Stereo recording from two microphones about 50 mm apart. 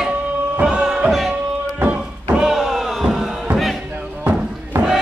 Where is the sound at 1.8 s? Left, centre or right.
Right.